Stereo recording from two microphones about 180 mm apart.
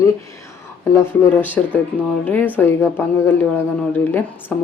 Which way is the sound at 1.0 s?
10° left (ahead or behind).